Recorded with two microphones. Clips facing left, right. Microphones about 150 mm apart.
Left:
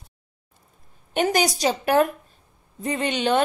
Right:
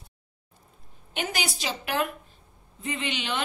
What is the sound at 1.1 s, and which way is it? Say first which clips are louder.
A woman's voice: left 10 dB; 45° left (ahead or behind).